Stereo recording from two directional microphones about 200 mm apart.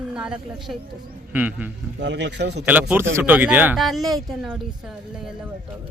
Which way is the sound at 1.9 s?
60° right (ahead or behind).